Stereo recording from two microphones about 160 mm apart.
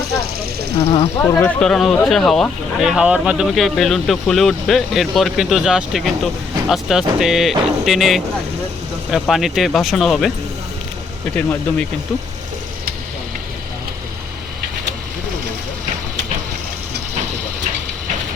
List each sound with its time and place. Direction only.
0.8 s speech: 30° left (ahead or behind)
1.2 s speech: 10° left (ahead or behind)